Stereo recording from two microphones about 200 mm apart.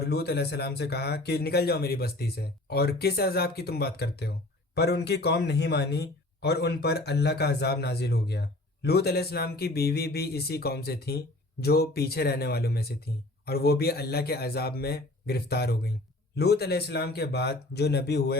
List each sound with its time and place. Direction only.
0.0 s speech: 55° left (ahead or behind)